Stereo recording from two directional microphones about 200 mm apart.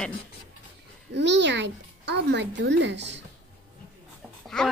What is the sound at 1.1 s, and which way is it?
Speech, 60° right (ahead or behind).